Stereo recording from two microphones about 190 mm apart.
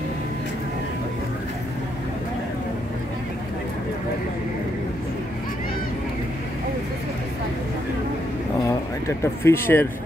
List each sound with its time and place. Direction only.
9.2 s speech: 15° left (ahead or behind)